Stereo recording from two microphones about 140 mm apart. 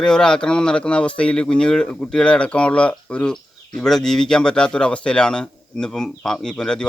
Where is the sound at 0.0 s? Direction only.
5° left (ahead or behind).